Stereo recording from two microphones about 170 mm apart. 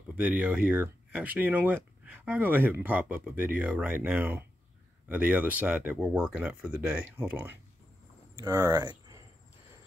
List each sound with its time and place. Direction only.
0.1 s speech: 10° right (ahead or behind)
8.4 s speech: 20° right (ahead or behind)